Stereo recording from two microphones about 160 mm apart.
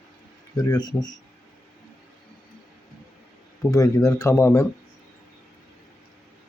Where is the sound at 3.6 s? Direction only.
20° left (ahead or behind).